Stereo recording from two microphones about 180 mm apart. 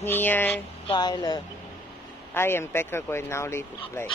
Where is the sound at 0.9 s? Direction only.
25° left (ahead or behind).